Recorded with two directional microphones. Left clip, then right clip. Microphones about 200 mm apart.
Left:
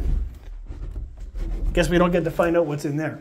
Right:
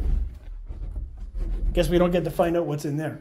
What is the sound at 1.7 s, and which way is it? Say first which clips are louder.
Speech: left 2 dB; 15° left (ahead or behind).